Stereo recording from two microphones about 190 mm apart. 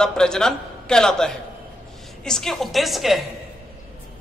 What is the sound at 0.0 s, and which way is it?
A man's voice, 5° left (ahead or behind).